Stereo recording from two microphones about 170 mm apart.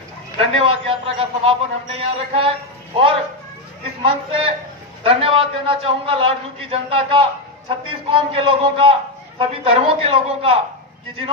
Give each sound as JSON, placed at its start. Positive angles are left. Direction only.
{"t": 0.4, "sound": "a man's voice", "side_deg": -35}
{"t": 4.0, "sound": "a man's voice", "side_deg": -35}